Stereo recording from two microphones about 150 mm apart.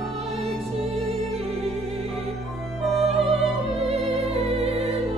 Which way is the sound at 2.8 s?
Centre (ahead or behind).